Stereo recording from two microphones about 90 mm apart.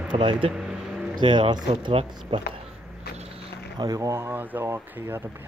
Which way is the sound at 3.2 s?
90° right.